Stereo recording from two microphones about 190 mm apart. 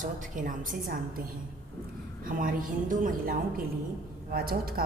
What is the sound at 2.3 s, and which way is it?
A woman's voice, 45° right (ahead or behind).